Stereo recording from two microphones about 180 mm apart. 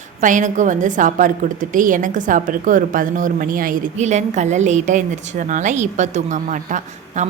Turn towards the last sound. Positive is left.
turn(degrees=-45)  # may be behind; listen again after turning